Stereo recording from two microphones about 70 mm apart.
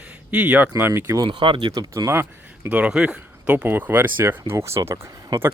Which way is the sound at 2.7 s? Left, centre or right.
Centre.